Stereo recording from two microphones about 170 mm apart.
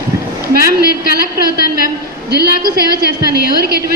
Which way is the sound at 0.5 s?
65° right (ahead or behind).